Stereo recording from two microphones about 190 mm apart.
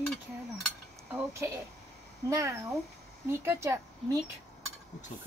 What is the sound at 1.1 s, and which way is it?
A woman's voice, 15° right (ahead or behind).